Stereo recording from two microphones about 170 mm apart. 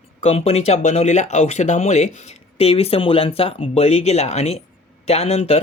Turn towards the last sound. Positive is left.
turn(degrees=40)  # may be behind; listen again after turning